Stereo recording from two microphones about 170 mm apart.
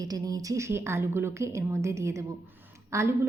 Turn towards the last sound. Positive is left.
turn(degrees=-15)  # may be behind; listen again after turning